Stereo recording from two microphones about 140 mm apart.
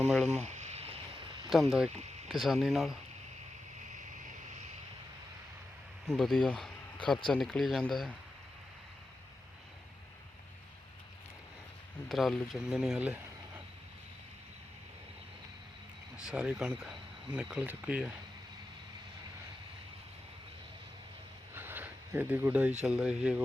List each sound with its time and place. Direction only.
0.4 s a sound: 55° right (ahead or behind)
1.5 s speech: centre (ahead or behind)
6.1 s speech: centre (ahead or behind)
12.0 s speech: centre (ahead or behind)
16.3 s speech: 5° right (ahead or behind)
21.5 s a sound: 15° right (ahead or behind)
22.8 s speech: 5° right (ahead or behind)